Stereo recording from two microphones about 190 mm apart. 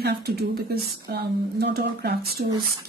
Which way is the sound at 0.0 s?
55° right (ahead or behind).